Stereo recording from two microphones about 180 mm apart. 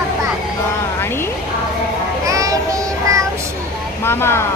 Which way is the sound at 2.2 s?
20° right (ahead or behind).